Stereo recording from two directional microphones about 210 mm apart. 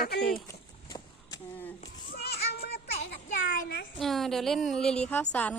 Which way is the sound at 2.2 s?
50° left (ahead or behind).